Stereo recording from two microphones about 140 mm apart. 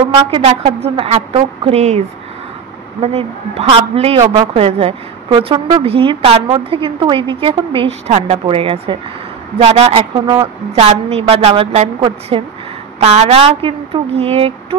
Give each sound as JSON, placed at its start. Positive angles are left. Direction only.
{"t": 0.8, "sound": "a woman's voice", "side_deg": -50}
{"t": 10.7, "sound": "a woman's voice", "side_deg": -50}
{"t": 13.0, "sound": "speech", "side_deg": -50}